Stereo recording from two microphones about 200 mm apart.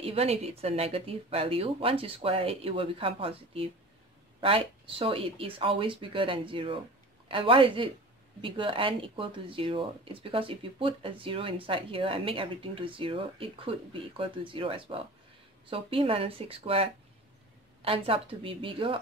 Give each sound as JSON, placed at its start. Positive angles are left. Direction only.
{"t": 0.0, "sound": "speech", "side_deg": -30}